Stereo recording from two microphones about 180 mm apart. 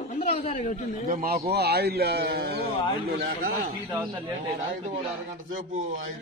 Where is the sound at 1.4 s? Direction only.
65° right (ahead or behind).